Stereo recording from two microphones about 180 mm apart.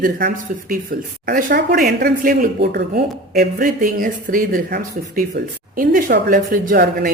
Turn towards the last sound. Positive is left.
turn(degrees=-50)  # may be behind; listen again after turning